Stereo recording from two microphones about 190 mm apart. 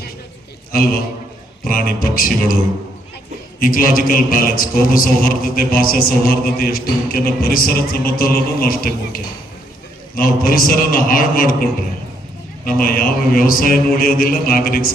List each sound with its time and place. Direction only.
0.7 s a man's voice: 50° left (ahead or behind)
3.6 s a man's voice: 45° left (ahead or behind)